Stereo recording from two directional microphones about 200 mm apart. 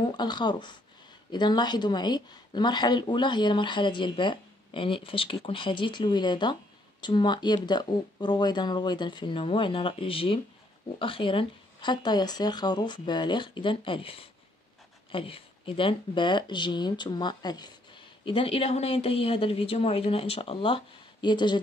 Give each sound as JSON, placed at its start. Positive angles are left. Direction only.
{"t": 0.0, "sound": "speech", "side_deg": 20}